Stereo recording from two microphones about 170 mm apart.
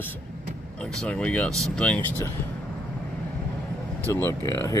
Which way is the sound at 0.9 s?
5° left (ahead or behind).